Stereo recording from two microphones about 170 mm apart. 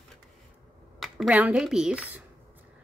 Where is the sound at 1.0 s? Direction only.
5° right (ahead or behind).